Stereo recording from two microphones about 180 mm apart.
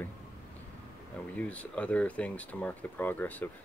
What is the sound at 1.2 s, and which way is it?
Speech, 10° left (ahead or behind).